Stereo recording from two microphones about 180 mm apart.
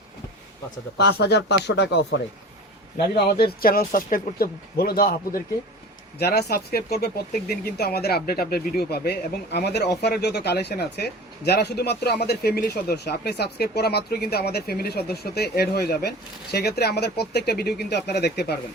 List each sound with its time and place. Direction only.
0.9 s speech: 65° left (ahead or behind)
3.0 s speech: 60° left (ahead or behind)